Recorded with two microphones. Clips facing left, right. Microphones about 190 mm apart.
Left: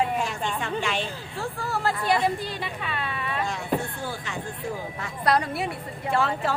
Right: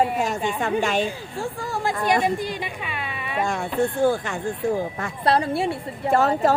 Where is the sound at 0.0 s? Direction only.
45° right (ahead or behind).